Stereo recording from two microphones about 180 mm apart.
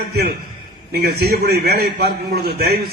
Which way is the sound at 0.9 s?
60° right (ahead or behind).